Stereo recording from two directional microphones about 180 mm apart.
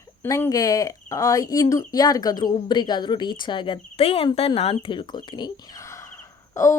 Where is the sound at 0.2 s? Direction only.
15° left (ahead or behind).